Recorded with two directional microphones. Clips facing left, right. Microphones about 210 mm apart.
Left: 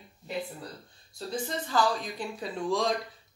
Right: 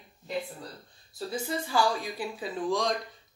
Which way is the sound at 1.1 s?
5° right (ahead or behind).